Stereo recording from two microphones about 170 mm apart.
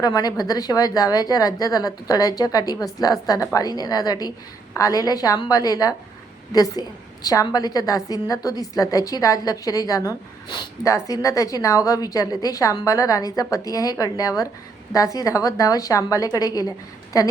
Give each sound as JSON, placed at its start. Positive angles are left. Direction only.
{"t": 0.0, "sound": "a woman's voice", "side_deg": 20}